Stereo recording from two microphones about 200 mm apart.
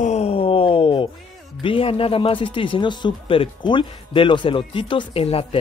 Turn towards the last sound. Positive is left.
turn(degrees=30)  # may be behind; listen again after turning